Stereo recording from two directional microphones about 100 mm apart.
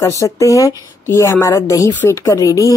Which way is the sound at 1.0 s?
25° left (ahead or behind).